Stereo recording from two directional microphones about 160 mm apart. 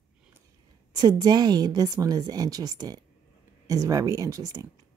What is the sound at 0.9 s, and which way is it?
Speech, 25° right (ahead or behind).